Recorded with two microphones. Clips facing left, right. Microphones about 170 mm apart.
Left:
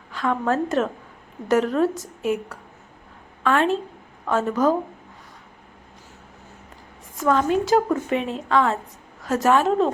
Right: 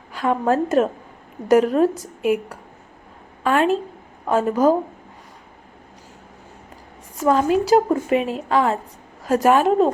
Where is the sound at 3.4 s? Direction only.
10° right (ahead or behind).